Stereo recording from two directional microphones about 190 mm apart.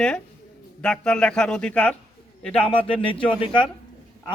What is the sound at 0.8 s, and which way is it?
A man's voice, 5° left (ahead or behind).